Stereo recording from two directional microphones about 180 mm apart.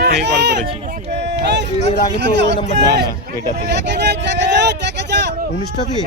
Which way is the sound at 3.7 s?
75° right (ahead or behind).